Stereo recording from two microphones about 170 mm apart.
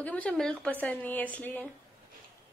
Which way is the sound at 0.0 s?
10° left (ahead or behind).